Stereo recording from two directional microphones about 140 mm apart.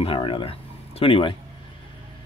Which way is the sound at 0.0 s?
40° left (ahead or behind).